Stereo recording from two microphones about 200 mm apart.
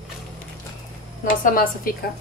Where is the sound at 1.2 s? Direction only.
40° left (ahead or behind).